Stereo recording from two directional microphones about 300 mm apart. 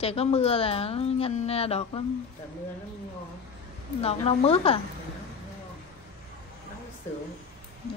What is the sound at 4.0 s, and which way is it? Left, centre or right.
Speech, centre.